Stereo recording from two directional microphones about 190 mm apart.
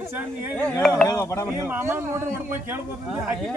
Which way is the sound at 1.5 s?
15° right (ahead or behind).